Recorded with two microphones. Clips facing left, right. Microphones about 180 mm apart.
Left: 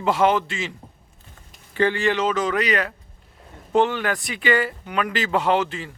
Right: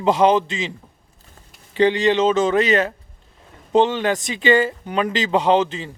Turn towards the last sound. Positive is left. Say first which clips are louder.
# right 4 dB
turn(degrees=-20)  # may be behind; listen again after turning